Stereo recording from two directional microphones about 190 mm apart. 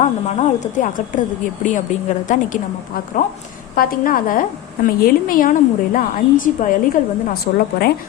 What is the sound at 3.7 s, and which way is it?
A woman's voice, 50° left (ahead or behind).